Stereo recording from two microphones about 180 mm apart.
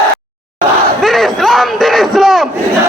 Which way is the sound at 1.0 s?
Centre (ahead or behind).